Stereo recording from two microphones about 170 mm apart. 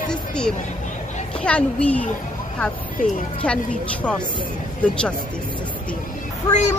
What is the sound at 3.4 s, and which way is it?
Speech, 5° left (ahead or behind).